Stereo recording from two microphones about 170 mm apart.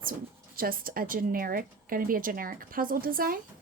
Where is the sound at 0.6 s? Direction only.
55° right (ahead or behind).